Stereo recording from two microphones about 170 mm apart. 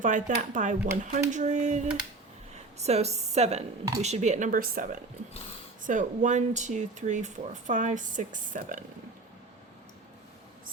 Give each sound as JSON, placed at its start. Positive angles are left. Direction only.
{"t": 0.0, "sound": "a woman's voice", "side_deg": -50}